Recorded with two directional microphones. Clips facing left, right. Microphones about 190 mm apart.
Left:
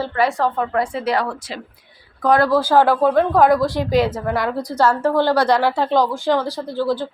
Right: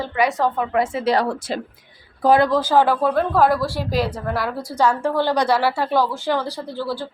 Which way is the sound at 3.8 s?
Centre (ahead or behind).